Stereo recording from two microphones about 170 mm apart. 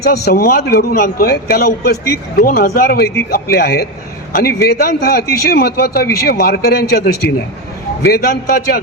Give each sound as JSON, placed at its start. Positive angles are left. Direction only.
{"t": 0.0, "sound": "a man's voice", "side_deg": 70}